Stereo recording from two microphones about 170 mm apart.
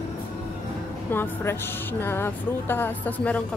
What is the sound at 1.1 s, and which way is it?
A woman's voice, 10° left (ahead or behind).